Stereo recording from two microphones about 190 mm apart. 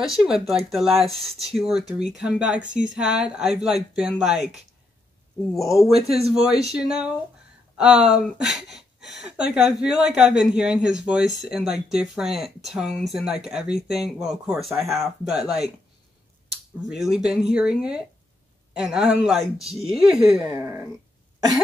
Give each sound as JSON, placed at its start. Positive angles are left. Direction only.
{"t": 0.0, "sound": "speech", "side_deg": 0}
{"t": 0.9, "sound": "a man's voice", "side_deg": -30}
{"t": 1.2, "sound": "speech", "side_deg": 0}
{"t": 5.9, "sound": "a man's voice", "side_deg": -30}
{"t": 6.7, "sound": "speech", "side_deg": -5}
{"t": 17.2, "sound": "speech", "side_deg": -5}